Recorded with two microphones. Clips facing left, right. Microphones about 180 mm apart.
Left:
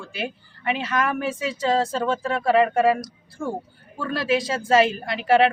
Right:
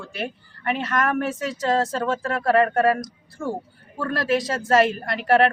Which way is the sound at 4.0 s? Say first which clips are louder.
Even; centre (ahead or behind).